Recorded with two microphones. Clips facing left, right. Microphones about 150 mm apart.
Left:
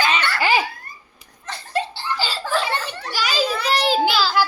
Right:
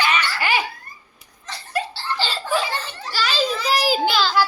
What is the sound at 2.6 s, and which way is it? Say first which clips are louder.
Children playing: left 2 dB; 65° left (ahead or behind).